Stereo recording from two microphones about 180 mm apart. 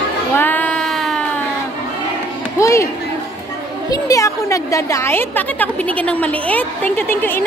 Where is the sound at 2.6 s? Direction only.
15° left (ahead or behind).